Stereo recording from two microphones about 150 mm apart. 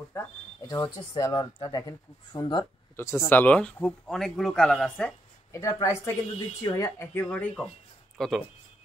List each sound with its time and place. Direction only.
0.2 s speech: 20° left (ahead or behind)
3.0 s a man's voice: 15° left (ahead or behind)
5.5 s speech: 20° left (ahead or behind)
7.2 s a man's voice: 10° left (ahead or behind)